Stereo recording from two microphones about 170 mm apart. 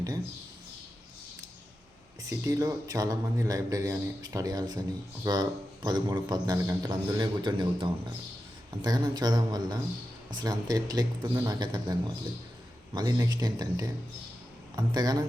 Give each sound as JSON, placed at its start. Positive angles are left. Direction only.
{"t": 2.4, "sound": "a man's voice", "side_deg": -20}